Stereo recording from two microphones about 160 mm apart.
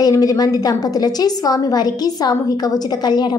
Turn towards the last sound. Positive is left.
turn(degrees=25)  # may be behind; listen again after turning